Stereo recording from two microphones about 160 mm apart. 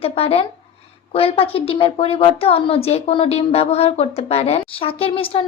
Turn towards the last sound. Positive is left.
turn(degrees=35)  # may be behind; listen again after turning